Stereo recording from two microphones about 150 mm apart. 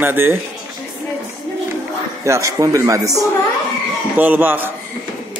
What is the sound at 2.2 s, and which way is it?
Speech, 20° right (ahead or behind).